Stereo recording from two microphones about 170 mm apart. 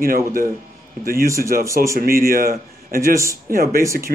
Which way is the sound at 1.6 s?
15° right (ahead or behind).